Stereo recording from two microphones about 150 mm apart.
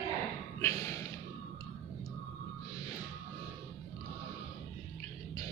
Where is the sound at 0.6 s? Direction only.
20° left (ahead or behind).